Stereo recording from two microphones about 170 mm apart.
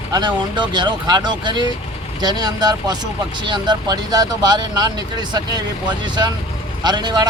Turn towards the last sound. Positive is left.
turn(degrees=-25)  # may be behind; listen again after turning